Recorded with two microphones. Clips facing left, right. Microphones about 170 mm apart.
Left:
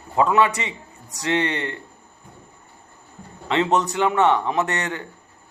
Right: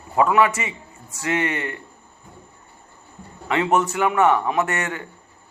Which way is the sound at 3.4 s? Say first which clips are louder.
Even; 20° left (ahead or behind).